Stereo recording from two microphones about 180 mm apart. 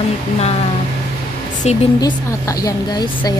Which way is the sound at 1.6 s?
35° left (ahead or behind).